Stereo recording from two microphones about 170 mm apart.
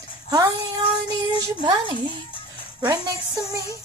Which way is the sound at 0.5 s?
30° right (ahead or behind).